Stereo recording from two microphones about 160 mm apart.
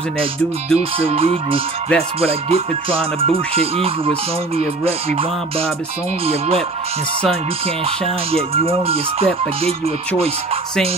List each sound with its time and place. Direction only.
0.7 s music: 35° right (ahead or behind)
8.3 s music: 35° right (ahead or behind)